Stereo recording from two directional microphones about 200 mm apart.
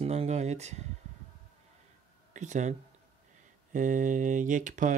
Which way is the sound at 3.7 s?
40° right (ahead or behind).